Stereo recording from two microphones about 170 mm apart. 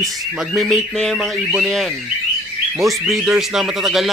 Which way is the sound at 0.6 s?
Centre (ahead or behind).